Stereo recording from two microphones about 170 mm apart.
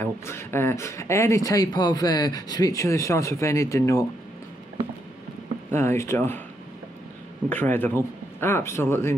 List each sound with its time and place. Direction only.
0.0 s speech: 15° left (ahead or behind)
5.7 s speech: 15° left (ahead or behind)
7.6 s speech: 10° left (ahead or behind)